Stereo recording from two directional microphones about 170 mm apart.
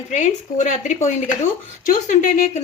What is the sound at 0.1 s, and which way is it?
Speech, 45° left (ahead or behind).